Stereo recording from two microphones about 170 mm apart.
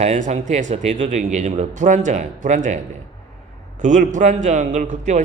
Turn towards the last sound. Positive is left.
turn(degrees=-45)  # may be behind; listen again after turning